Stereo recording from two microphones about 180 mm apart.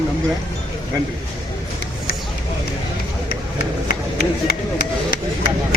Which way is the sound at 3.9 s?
60° left (ahead or behind).